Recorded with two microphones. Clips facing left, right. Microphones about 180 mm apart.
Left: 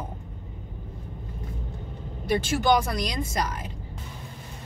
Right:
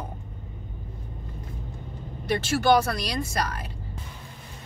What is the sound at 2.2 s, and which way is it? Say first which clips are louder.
Speech: even; 15° left (ahead or behind).